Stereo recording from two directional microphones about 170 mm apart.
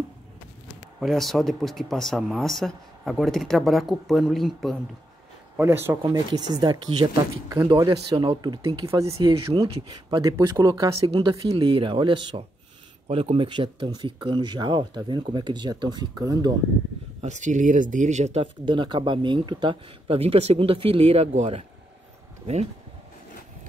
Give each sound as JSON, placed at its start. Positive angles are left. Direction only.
{"t": 0.9, "sound": "speech", "side_deg": 0}
{"t": 5.6, "sound": "speech", "side_deg": -15}
{"t": 11.0, "sound": "speech", "side_deg": -35}
{"t": 17.2, "sound": "speech", "side_deg": -45}